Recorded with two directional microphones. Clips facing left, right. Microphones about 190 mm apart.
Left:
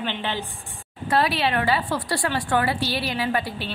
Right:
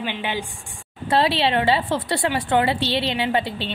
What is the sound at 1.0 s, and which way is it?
A woman's voice, 25° right (ahead or behind).